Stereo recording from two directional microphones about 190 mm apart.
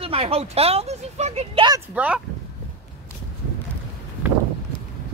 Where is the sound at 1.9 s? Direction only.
5° right (ahead or behind).